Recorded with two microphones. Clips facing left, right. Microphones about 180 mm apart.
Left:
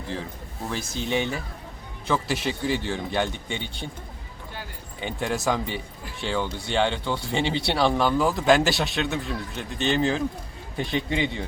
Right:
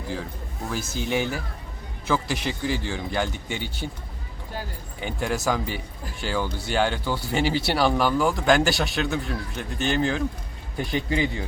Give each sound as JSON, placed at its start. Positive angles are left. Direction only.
{"t": 0.7, "sound": "speech", "side_deg": 0}
{"t": 5.2, "sound": "speech", "side_deg": 0}